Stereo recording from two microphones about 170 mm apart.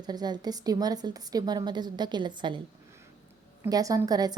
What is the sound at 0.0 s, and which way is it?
A woman's voice, 25° right (ahead or behind).